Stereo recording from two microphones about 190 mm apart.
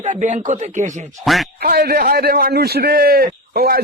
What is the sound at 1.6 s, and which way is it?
Speech, 55° right (ahead or behind).